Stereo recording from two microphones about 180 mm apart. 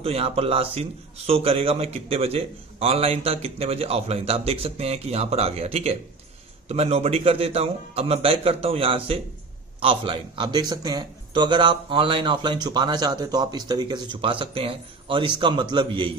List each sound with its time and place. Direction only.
0.0 s a man's voice: 35° right (ahead or behind)